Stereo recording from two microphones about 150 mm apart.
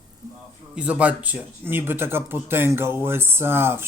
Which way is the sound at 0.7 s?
10° right (ahead or behind).